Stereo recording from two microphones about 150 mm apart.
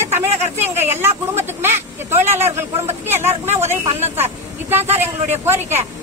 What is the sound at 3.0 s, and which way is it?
Vehicle, 15° right (ahead or behind).